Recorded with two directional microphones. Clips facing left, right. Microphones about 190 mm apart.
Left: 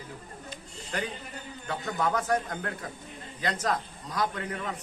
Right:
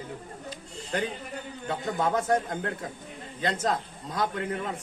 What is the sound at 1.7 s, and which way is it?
A man's voice, 25° right (ahead or behind).